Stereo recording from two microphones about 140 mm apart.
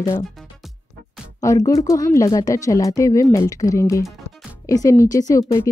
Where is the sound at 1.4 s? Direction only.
25° left (ahead or behind).